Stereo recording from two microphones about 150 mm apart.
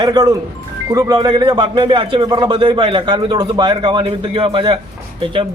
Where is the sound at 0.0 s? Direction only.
25° right (ahead or behind).